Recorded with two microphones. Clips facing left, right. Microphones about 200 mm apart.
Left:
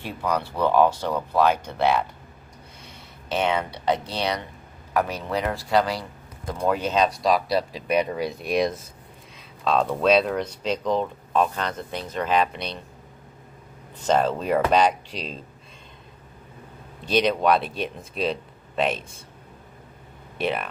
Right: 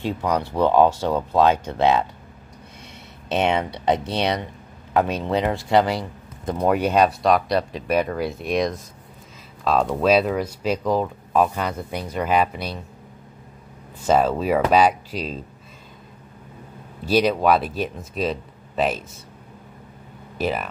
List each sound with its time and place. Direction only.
0.0 s speech: 15° right (ahead or behind)
3.3 s speech: 20° right (ahead or behind)
7.1 s speech: centre (ahead or behind)
14.0 s speech: 5° right (ahead or behind)
17.0 s speech: 5° right (ahead or behind)
20.3 s speech: centre (ahead or behind)